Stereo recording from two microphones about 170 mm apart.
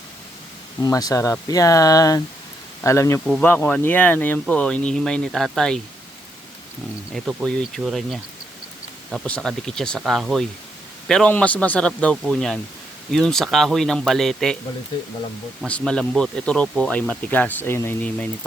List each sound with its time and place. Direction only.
0.8 s speech: 20° left (ahead or behind); by 5.8 s 5° left (ahead or behind)
7.1 s speech: centre (ahead or behind)
15.6 s speech: 5° left (ahead or behind)